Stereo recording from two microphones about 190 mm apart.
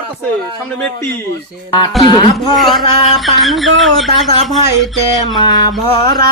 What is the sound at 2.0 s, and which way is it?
Speech, 25° left (ahead or behind).